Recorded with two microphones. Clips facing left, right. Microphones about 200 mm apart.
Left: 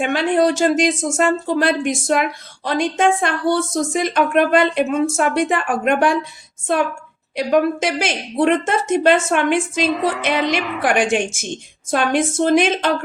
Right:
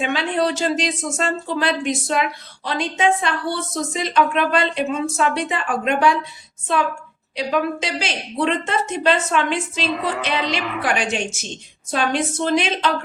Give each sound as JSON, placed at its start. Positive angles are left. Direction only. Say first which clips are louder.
{"t": 0.0, "sound": "speech", "louder": "left 5 dB", "side_deg": 50}
{"t": 7.3, "sound": "speech", "louder": "left 5 dB", "side_deg": 50}